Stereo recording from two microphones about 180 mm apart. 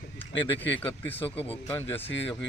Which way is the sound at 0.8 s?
10° left (ahead or behind).